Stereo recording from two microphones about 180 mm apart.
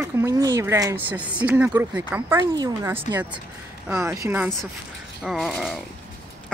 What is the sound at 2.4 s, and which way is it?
A woman's voice, 20° right (ahead or behind).